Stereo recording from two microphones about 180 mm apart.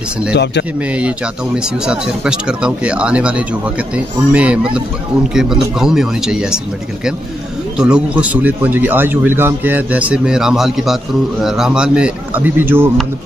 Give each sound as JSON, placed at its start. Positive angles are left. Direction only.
{"t": 0.3, "sound": "speech", "side_deg": 70}
{"t": 0.9, "sound": "speech", "side_deg": -5}
{"t": 7.7, "sound": "speech", "side_deg": -5}